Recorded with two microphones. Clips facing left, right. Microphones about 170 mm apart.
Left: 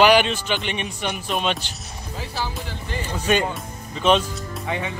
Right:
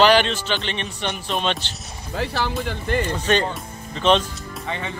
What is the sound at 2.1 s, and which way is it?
Speech, 70° right (ahead or behind).